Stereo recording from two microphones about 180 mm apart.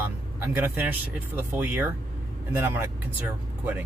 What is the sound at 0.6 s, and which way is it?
Speech, 10° right (ahead or behind).